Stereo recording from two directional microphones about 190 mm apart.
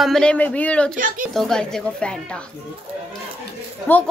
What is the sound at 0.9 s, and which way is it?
Speech, 45° right (ahead or behind).